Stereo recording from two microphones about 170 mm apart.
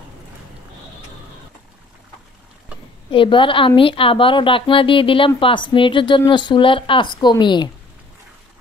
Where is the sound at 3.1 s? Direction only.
30° left (ahead or behind).